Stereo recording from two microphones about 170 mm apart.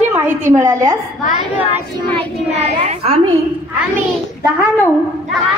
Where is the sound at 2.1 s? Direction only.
35° right (ahead or behind).